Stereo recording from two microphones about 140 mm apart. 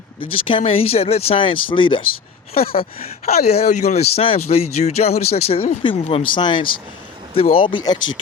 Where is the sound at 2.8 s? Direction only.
50° left (ahead or behind).